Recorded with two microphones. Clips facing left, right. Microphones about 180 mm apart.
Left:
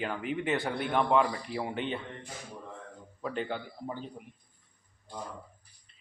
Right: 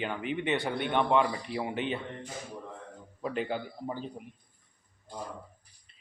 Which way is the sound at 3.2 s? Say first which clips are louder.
Right 2 dB; 10° right (ahead or behind).